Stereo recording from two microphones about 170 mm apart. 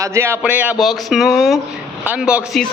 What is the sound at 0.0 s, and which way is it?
A man's voice, 15° right (ahead or behind).